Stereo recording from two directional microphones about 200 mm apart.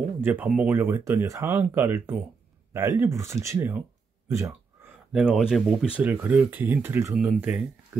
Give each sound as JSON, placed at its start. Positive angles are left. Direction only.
{"t": 0.2, "sound": "speech", "side_deg": -10}
{"t": 4.3, "sound": "a sound", "side_deg": -15}
{"t": 5.1, "sound": "speech", "side_deg": -5}